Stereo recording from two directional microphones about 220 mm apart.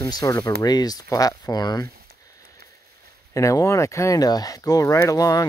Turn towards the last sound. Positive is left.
turn(degrees=15)  # may be behind; listen again after turning